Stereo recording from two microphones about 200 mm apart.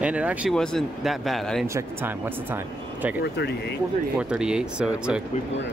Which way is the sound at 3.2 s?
55° left (ahead or behind).